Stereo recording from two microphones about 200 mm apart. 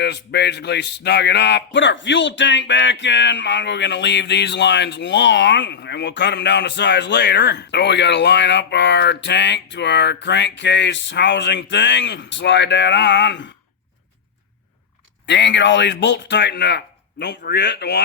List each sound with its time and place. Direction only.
0.0 s speech: 55° left (ahead or behind)
15.3 s speech: 60° left (ahead or behind)